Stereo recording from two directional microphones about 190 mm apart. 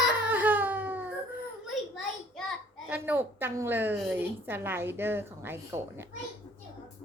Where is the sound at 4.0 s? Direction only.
10° right (ahead or behind).